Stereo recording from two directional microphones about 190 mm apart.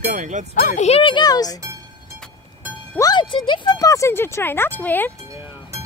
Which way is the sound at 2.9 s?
20° left (ahead or behind).